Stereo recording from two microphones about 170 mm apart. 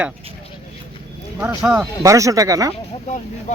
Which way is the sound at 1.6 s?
5° right (ahead or behind).